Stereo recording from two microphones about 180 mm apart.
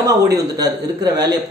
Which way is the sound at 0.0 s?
20° right (ahead or behind).